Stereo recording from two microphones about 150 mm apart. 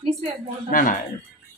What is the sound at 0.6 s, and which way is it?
Speech, 60° left (ahead or behind).